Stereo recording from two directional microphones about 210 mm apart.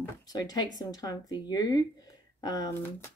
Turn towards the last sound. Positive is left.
turn(degrees=15)  # may be behind; listen again after turning